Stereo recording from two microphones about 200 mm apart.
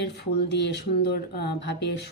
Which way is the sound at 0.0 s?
60° left (ahead or behind).